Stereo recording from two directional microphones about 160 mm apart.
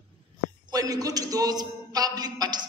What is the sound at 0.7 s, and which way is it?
A man's voice, 20° right (ahead or behind).